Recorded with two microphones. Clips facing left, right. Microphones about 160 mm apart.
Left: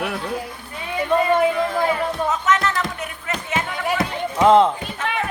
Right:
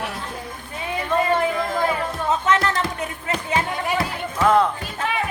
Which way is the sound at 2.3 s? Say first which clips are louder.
Right 5 dB; 30° right (ahead or behind).